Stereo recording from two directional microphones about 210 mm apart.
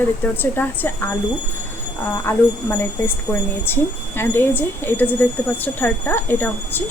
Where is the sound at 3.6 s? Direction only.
10° left (ahead or behind).